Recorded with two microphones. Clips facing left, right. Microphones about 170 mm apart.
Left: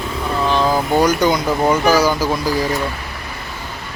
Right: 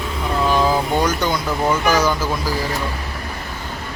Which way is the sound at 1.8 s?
35° left (ahead or behind).